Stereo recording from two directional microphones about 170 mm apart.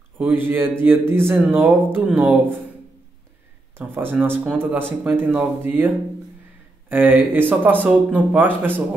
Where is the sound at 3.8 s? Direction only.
10° right (ahead or behind).